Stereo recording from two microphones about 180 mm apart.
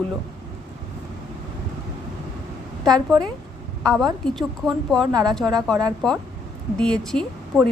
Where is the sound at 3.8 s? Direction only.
5° left (ahead or behind).